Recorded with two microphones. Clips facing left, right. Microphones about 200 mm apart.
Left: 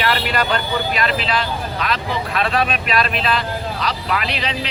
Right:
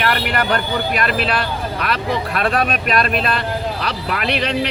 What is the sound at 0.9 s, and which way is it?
Speech, 55° right (ahead or behind).